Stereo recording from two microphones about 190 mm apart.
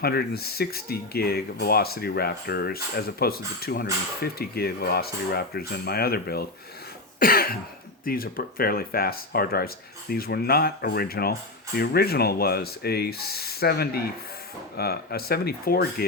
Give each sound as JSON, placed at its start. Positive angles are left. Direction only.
{"t": 0.0, "sound": "speech", "side_deg": 55}